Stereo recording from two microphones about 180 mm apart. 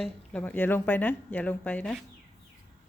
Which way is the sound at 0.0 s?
10° left (ahead or behind).